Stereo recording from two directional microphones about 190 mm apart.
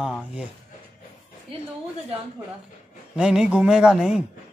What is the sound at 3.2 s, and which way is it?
Speech, 5° right (ahead or behind).